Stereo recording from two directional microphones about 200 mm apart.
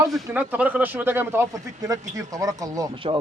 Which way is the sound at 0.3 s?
10° right (ahead or behind).